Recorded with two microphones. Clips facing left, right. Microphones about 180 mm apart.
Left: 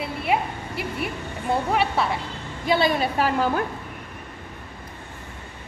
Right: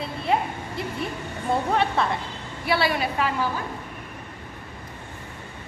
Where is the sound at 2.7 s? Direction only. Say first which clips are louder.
Left 3 dB; 20° left (ahead or behind).